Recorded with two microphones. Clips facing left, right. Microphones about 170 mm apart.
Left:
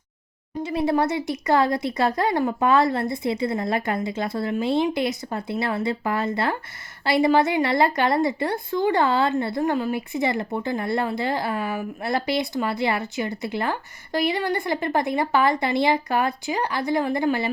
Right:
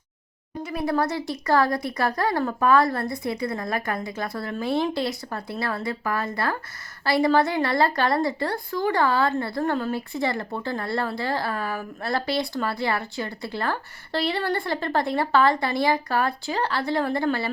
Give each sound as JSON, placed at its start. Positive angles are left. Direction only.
{"t": 0.6, "sound": "a woman's voice", "side_deg": 25}